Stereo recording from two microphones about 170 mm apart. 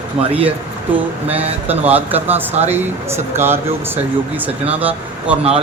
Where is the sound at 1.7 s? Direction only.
10° right (ahead or behind).